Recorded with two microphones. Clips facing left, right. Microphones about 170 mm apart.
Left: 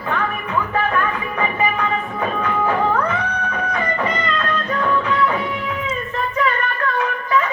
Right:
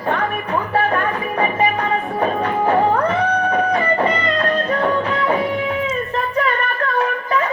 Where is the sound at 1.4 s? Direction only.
35° right (ahead or behind).